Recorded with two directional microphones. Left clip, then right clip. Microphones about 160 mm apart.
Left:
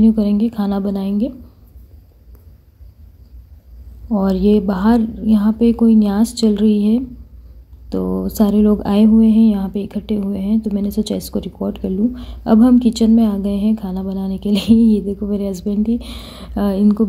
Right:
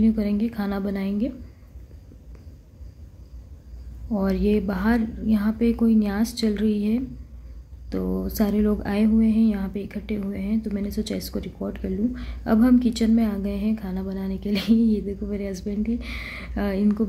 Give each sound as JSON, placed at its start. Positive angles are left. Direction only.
{"t": 0.0, "sound": "a woman's voice", "side_deg": 25}
{"t": 4.1, "sound": "a woman's voice", "side_deg": 30}
{"t": 16.2, "sound": "speech", "side_deg": -10}
{"t": 16.5, "sound": "a woman's voice", "side_deg": 25}